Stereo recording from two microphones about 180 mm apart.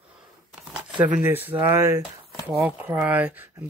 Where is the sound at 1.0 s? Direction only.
10° right (ahead or behind).